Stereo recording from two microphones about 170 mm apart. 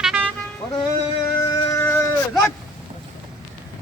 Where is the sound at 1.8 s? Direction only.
10° left (ahead or behind).